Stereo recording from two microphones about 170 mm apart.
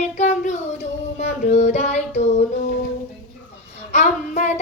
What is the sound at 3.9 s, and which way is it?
Child singing, 45° left (ahead or behind).